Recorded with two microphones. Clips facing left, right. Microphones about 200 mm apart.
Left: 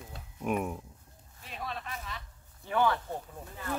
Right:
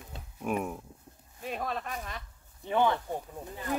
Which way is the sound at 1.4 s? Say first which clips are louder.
Right 6 dB; 50° right (ahead or behind).